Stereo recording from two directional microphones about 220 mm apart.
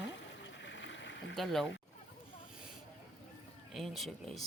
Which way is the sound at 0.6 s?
55° left (ahead or behind).